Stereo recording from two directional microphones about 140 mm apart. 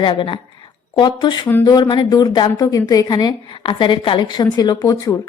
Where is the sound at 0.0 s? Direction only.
35° left (ahead or behind).